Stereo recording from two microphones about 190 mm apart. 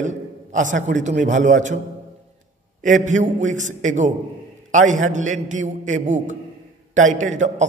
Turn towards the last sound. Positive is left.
turn(degrees=-40)  # may be behind; listen again after turning